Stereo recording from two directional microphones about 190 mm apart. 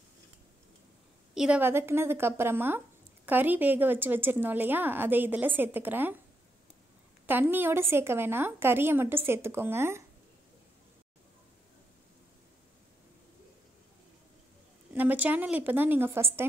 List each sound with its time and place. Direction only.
1.3 s a woman's voice: 5° right (ahead or behind)
7.2 s a woman's voice: 10° right (ahead or behind)
15.0 s a woman's voice: 10° right (ahead or behind)